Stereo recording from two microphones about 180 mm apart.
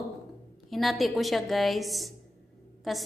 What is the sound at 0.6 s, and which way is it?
A woman's voice, centre (ahead or behind).